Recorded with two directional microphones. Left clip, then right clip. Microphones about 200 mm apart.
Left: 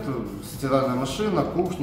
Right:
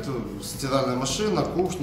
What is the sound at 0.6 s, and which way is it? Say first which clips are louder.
Speech: left 2 dB; 15° left (ahead or behind).